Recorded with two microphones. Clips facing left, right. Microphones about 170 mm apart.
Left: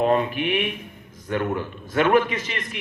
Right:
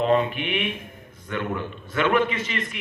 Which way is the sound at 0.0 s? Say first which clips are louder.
Left 1 dB; 45° left (ahead or behind).